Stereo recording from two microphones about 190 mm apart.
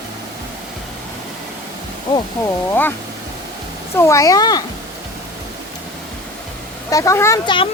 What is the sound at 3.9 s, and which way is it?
Speech, 15° left (ahead or behind).